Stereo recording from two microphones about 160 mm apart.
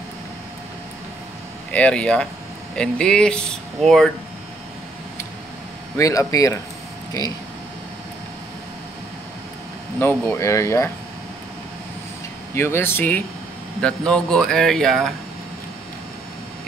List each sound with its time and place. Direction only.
1.7 s speech: 5° left (ahead or behind)
5.9 s speech: 20° left (ahead or behind)
9.9 s speech: 10° left (ahead or behind)
12.5 s speech: 15° left (ahead or behind)